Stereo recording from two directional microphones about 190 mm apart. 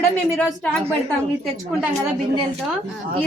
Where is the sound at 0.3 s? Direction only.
Centre (ahead or behind).